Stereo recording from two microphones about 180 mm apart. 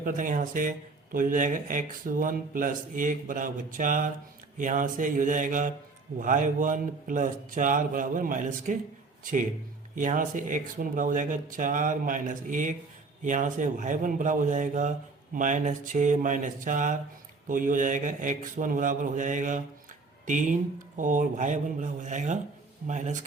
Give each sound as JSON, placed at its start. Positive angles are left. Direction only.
{"t": 0.0, "sound": "speech", "side_deg": -50}
{"t": 9.9, "sound": "speech", "side_deg": -45}